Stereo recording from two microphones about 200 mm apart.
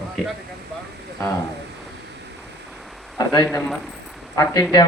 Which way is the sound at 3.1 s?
20° left (ahead or behind).